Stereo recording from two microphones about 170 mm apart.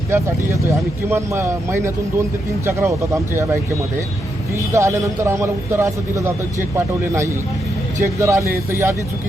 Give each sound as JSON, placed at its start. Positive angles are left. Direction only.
{"t": 0.1, "sound": "a man's voice", "side_deg": -15}
{"t": 4.5, "sound": "a man's voice", "side_deg": -15}